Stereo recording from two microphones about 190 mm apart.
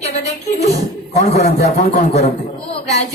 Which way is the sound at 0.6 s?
35° left (ahead or behind).